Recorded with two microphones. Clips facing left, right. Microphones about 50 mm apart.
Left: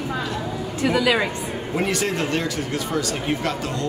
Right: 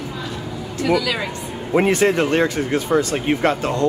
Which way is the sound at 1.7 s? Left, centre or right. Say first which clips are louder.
Right 8 dB; right.